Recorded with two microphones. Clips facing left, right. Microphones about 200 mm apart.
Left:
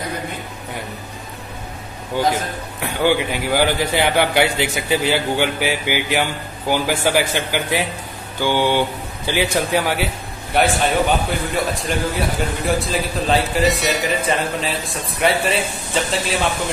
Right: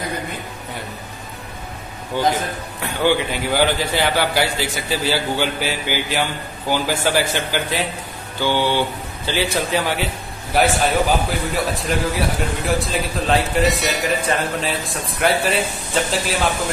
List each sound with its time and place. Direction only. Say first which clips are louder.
2.8 s a man's voice: left 1 dB; 15° left (ahead or behind)
10.5 s a man's voice: even; centre (ahead or behind)